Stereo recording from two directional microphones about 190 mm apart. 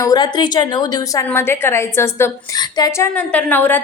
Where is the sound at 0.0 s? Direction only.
20° left (ahead or behind).